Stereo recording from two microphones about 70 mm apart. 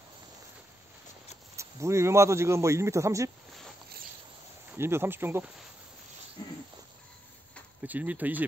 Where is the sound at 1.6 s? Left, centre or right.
Right.